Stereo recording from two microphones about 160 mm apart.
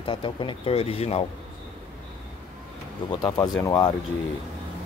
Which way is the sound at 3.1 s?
25° left (ahead or behind).